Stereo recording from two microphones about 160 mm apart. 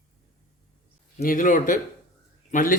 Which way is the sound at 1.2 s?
60° left (ahead or behind).